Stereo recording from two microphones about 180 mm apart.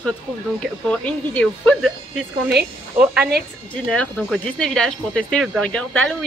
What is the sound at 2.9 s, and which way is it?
Speech, 5° right (ahead or behind).